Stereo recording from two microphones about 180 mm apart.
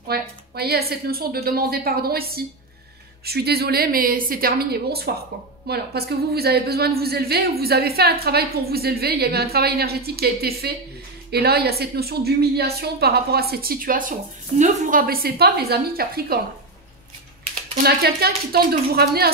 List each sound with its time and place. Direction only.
0.1 s a woman's voice: 60° right (ahead or behind)
17.8 s a woman's voice: 60° right (ahead or behind)